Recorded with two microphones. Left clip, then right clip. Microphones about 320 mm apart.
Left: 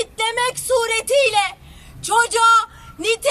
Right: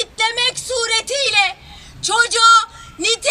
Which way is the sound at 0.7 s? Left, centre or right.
Centre.